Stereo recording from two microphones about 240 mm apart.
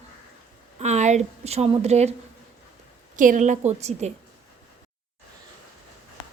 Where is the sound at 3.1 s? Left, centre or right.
Right.